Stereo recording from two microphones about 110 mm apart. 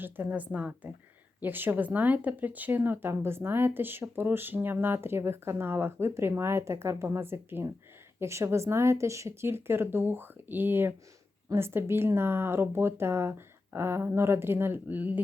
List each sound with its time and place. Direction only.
0.0 s a woman's voice: 15° right (ahead or behind)